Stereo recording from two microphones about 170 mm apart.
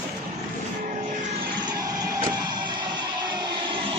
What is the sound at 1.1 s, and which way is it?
Vehicle, 50° right (ahead or behind).